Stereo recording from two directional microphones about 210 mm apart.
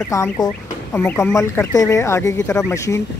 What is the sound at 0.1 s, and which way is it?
Speech, 15° left (ahead or behind).